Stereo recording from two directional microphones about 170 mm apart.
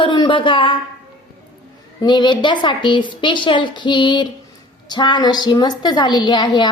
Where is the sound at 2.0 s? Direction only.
25° left (ahead or behind).